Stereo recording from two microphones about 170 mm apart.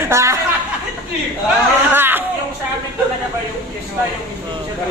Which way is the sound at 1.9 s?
10° right (ahead or behind).